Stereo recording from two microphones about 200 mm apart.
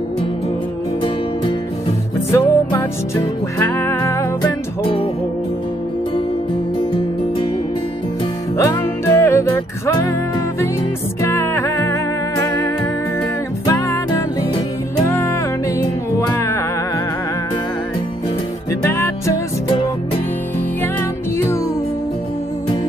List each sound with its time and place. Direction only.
2.3 s music: 15° left (ahead or behind)
6.9 s music: 25° left (ahead or behind)
8.5 s music: 15° left (ahead or behind)
11.1 s music: 15° left (ahead or behind)
18.7 s music: 15° left (ahead or behind)